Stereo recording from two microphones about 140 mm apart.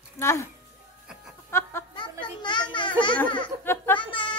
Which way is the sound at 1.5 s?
15° left (ahead or behind).